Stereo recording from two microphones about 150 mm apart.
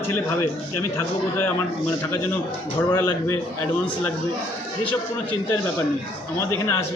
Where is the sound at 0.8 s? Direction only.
15° left (ahead or behind).